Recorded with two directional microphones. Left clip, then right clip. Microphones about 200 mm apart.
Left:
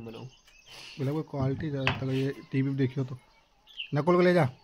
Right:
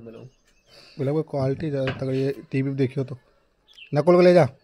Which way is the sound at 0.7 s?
15° left (ahead or behind).